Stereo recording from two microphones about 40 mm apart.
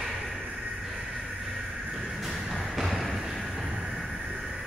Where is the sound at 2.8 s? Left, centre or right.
Centre.